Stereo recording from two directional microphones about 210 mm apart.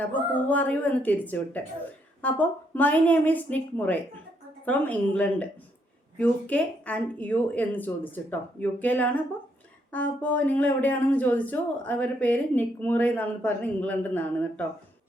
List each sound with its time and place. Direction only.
0.0 s speech: 5° left (ahead or behind)